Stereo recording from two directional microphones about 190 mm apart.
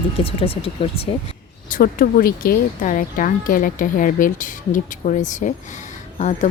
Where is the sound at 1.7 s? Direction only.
45° left (ahead or behind).